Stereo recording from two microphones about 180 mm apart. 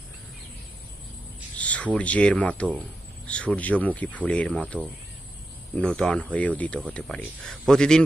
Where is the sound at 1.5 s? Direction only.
5° left (ahead or behind).